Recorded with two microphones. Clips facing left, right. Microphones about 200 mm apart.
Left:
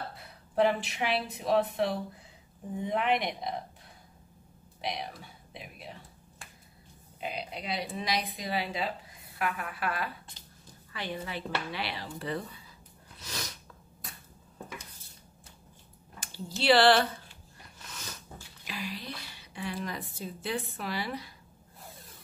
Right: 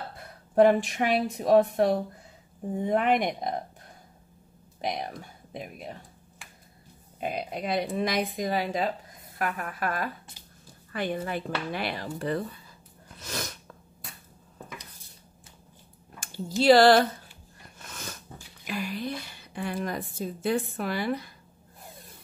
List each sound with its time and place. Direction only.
0.2 s a woman's voice: 45° right (ahead or behind)
4.8 s speech: 45° right (ahead or behind)
7.2 s a woman's voice: 50° right (ahead or behind)
13.2 s sneeze: 50° right (ahead or behind)
16.2 s speech: 45° right (ahead or behind)
17.8 s dog: 50° right (ahead or behind)
18.7 s a woman's voice: 55° right (ahead or behind)